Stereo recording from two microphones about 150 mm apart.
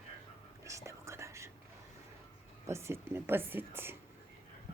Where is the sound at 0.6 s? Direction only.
20° right (ahead or behind).